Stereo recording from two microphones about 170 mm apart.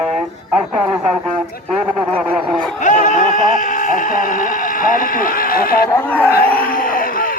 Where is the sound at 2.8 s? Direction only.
50° left (ahead or behind).